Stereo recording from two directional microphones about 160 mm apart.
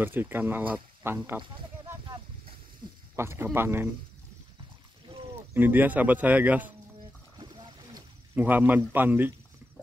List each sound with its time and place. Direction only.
0.0 s speech: 10° right (ahead or behind)
2.8 s snake: 30° right (ahead or behind)
3.2 s speech: 15° right (ahead or behind)
5.5 s speech: 10° right (ahead or behind)
7.3 s a sound: 30° right (ahead or behind)
8.4 s speech: 10° right (ahead or behind)